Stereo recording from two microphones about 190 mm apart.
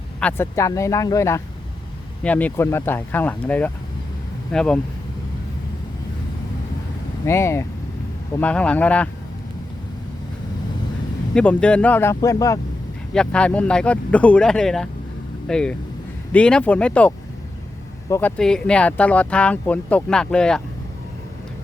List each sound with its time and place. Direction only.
0.2 s speech: 10° left (ahead or behind)
7.3 s speech: 15° left (ahead or behind)
11.3 s speech: 5° left (ahead or behind)
13.1 s speech: 5° left (ahead or behind)